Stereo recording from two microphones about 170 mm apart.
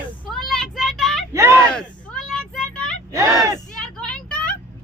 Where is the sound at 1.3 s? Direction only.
15° right (ahead or behind).